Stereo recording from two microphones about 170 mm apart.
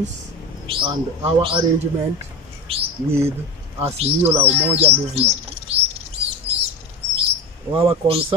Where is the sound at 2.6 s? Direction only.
35° right (ahead or behind).